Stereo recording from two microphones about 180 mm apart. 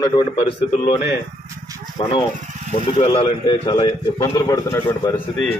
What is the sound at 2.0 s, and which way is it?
A man's voice, 30° left (ahead or behind).